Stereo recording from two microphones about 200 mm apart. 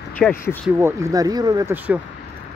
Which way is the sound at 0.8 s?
15° right (ahead or behind).